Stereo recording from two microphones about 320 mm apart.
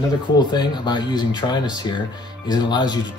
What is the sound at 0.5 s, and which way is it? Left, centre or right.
Speech, centre.